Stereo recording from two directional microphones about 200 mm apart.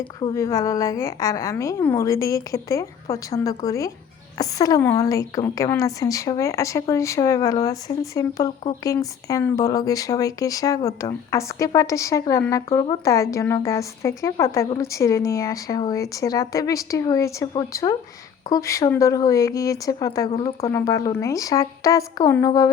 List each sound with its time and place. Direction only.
0.2 s a woman's voice: 15° left (ahead or behind)
20.3 s speech: 30° left (ahead or behind)
20.7 s a woman's voice: 15° left (ahead or behind)